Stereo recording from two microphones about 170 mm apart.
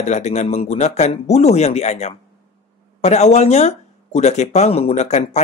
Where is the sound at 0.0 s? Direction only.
40° left (ahead or behind).